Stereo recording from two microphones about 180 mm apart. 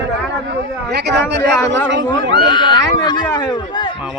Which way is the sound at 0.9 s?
65° right (ahead or behind).